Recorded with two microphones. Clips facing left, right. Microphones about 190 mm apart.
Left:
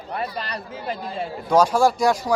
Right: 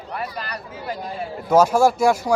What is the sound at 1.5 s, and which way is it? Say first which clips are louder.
Speech: right 2 dB; 10° right (ahead or behind).